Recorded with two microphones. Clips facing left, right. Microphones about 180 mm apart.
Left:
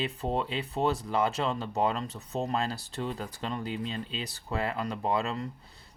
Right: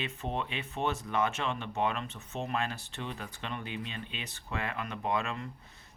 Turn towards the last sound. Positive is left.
turn(degrees=35)  # may be behind; listen again after turning